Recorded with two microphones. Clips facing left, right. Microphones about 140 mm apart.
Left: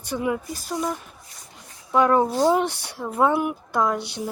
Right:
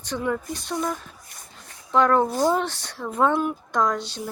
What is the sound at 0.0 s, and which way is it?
A woman's voice, 10° left (ahead or behind).